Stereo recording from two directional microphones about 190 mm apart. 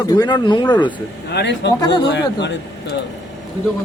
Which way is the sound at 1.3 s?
70° left (ahead or behind).